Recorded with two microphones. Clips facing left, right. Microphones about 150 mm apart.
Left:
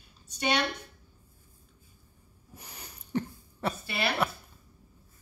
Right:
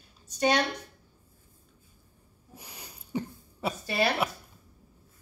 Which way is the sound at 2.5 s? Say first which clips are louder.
Right 1 dB; 10° right (ahead or behind).